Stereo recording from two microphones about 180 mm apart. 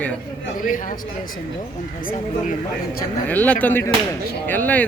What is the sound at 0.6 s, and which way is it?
Speech, 50° left (ahead or behind).